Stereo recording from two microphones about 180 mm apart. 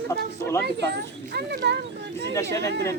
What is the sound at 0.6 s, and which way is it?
Speech, 70° right (ahead or behind).